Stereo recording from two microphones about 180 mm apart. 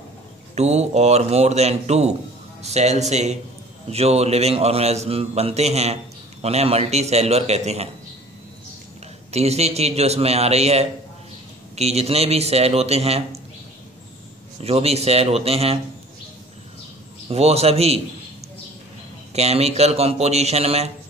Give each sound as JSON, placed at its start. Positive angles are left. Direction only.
{"t": 0.6, "sound": "a man's voice", "side_deg": -35}
{"t": 9.3, "sound": "a man's voice", "side_deg": -35}
{"t": 14.6, "sound": "a man's voice", "side_deg": -35}
{"t": 17.3, "sound": "a man's voice", "side_deg": -35}
{"t": 19.3, "sound": "a man's voice", "side_deg": -35}